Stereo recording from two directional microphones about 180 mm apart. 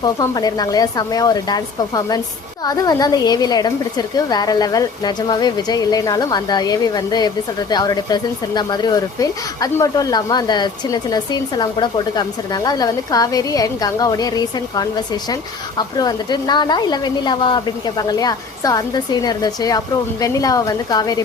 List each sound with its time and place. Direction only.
0.0 s a woman's voice: 20° left (ahead or behind)